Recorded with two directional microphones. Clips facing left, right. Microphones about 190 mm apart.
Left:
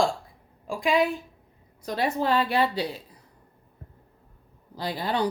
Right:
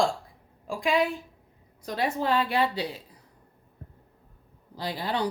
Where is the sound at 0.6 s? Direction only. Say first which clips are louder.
Left 2 dB; 15° left (ahead or behind).